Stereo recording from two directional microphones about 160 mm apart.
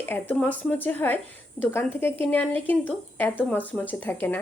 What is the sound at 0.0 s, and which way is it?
Speech, 10° left (ahead or behind).